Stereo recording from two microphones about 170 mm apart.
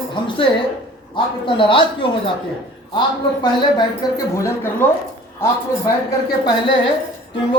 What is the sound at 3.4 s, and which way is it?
Speech, 25° left (ahead or behind).